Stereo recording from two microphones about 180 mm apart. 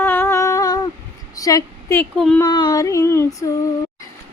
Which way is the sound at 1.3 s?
20° left (ahead or behind).